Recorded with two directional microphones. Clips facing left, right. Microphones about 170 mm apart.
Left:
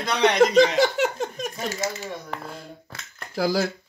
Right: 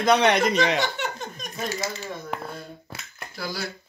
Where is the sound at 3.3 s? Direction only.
90° left.